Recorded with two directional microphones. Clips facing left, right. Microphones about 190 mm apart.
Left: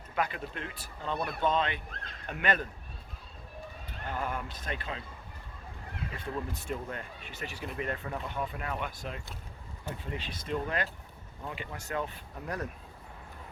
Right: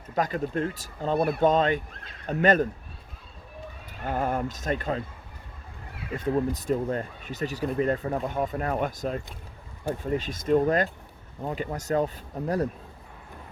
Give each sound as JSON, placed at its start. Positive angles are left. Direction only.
{"t": 0.2, "sound": "speech", "side_deg": -40}
{"t": 4.0, "sound": "speech", "side_deg": -45}
{"t": 6.1, "sound": "speech", "side_deg": -45}